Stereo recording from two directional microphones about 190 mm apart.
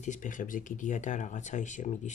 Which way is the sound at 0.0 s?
40° left (ahead or behind).